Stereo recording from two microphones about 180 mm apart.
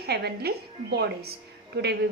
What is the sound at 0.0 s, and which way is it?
A woman's voice, 65° right (ahead or behind).